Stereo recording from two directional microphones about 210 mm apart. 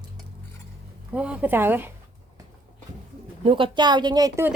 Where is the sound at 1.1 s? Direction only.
5° right (ahead or behind).